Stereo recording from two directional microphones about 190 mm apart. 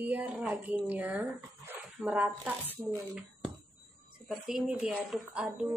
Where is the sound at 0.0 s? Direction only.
10° right (ahead or behind).